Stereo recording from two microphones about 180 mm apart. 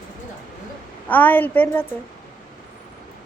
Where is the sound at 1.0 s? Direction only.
10° left (ahead or behind).